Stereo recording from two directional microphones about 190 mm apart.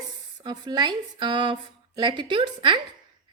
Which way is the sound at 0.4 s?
20° right (ahead or behind).